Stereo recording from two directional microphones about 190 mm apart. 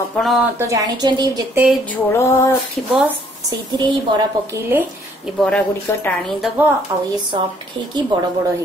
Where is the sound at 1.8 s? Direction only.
15° left (ahead or behind).